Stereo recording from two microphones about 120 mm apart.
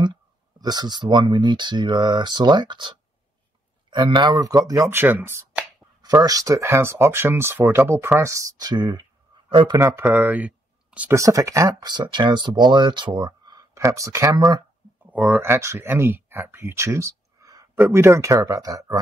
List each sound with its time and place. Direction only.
0.0 s speech: 40° right (ahead or behind)
9.8 s speech: 20° right (ahead or behind)
11.1 s speech: 25° right (ahead or behind)
15.0 s speech: 15° right (ahead or behind); by 17.6 s 30° right (ahead or behind)
17.7 s speech: 15° right (ahead or behind)